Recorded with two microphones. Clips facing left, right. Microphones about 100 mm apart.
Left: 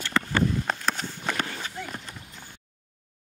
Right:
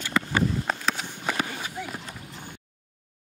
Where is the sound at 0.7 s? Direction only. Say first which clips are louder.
Even; 5° right (ahead or behind).